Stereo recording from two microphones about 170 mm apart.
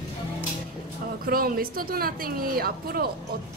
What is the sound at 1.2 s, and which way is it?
A woman's voice, 60° right (ahead or behind).